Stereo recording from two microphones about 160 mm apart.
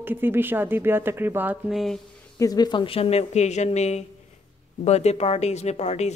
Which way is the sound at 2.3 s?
20° left (ahead or behind).